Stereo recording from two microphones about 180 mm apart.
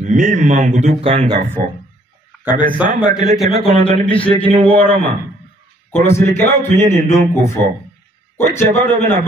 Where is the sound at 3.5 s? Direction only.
35° right (ahead or behind).